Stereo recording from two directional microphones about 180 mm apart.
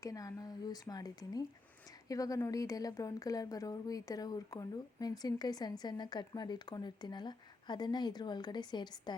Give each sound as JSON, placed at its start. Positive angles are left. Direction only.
{"t": 0.0, "sound": "speech", "side_deg": 20}